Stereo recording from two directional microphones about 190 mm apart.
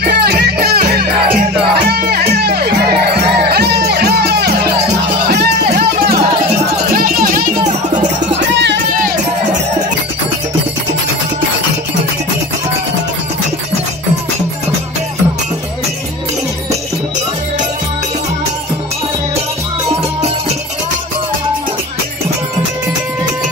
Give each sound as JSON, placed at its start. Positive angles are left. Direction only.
{"t": 0.1, "sound": "music", "side_deg": -55}
{"t": 7.0, "sound": "music", "side_deg": -50}
{"t": 8.5, "sound": "music", "side_deg": -65}